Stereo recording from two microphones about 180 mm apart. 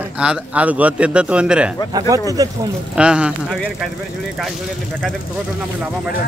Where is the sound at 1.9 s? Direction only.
20° right (ahead or behind).